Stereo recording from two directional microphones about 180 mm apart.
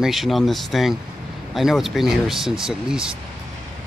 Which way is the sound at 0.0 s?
Centre (ahead or behind).